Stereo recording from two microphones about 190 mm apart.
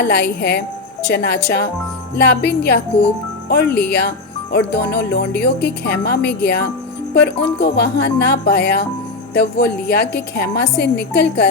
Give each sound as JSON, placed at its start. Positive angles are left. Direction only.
{"t": 0.1, "sound": "a woman's voice", "side_deg": 60}